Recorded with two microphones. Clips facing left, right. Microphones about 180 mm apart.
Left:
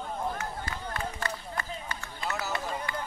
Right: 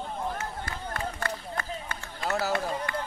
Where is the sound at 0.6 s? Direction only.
55° right (ahead or behind).